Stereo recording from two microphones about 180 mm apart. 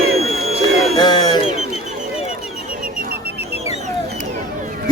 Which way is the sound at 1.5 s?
40° right (ahead or behind).